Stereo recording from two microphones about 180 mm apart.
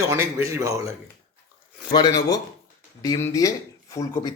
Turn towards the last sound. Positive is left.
turn(degrees=20)  # may be behind; listen again after turning